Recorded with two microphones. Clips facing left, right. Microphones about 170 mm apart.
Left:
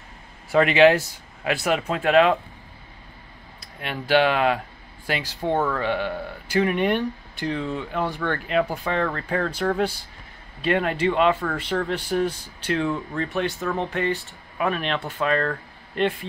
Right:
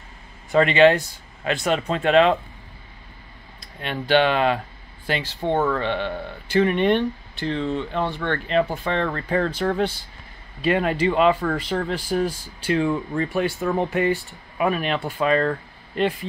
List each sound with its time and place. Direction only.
0.5 s speech: 5° left (ahead or behind)
3.8 s speech: 5° left (ahead or behind)
13.6 s speech: 15° right (ahead or behind); by 16.3 s centre (ahead or behind)